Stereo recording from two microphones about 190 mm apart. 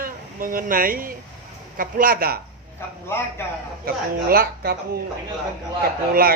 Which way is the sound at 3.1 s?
15° left (ahead or behind).